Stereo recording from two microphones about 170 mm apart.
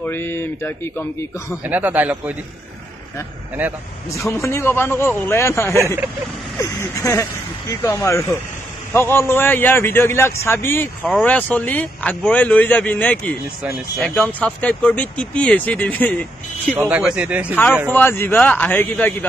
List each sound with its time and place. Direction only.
0.0 s speech: 15° left (ahead or behind)
1.6 s a man's voice: 10° right (ahead or behind)
4.1 s speech: 15° left (ahead or behind)
5.8 s a man's voice: 15° right (ahead or behind)
6.6 s speech: 20° left (ahead or behind)
16.7 s a man's voice: 10° right (ahead or behind)
17.9 s speech: 15° left (ahead or behind)